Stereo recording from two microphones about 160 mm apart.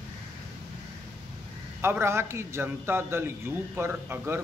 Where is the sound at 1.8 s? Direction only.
15° right (ahead or behind).